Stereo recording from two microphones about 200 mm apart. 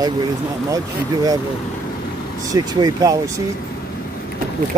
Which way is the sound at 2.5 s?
20° right (ahead or behind).